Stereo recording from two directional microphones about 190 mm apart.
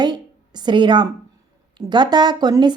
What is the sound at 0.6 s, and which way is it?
Speech, 25° right (ahead or behind).